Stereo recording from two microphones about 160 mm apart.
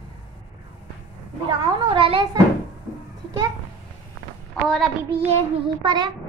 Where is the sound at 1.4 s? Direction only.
30° right (ahead or behind).